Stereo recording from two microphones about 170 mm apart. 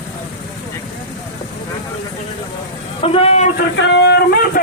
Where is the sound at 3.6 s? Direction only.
85° left.